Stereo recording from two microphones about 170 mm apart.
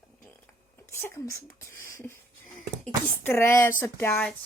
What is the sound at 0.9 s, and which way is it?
Speech, 15° left (ahead or behind).